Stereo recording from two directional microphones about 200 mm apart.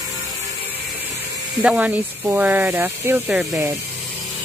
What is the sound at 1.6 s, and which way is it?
Speech, 5° right (ahead or behind).